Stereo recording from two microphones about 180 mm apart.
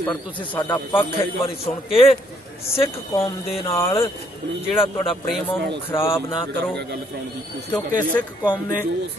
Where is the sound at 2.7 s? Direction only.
30° left (ahead or behind).